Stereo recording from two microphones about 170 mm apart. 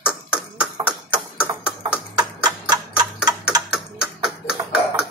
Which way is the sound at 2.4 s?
25° right (ahead or behind).